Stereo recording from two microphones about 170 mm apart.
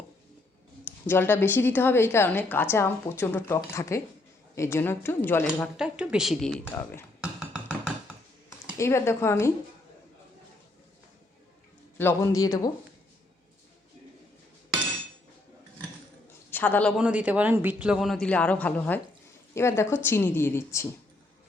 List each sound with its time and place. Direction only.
0.9 s a woman's voice: 15° left (ahead or behind)
5.7 s a man's voice: 5° right (ahead or behind)
7.2 s music: 5° right (ahead or behind)
8.8 s a woman's voice: 15° left (ahead or behind)
11.9 s speech: 15° left (ahead or behind)
16.5 s a man's voice: 10° left (ahead or behind)
17.0 s a man's voice: 5° right (ahead or behind); by 20.8 s 15° left (ahead or behind)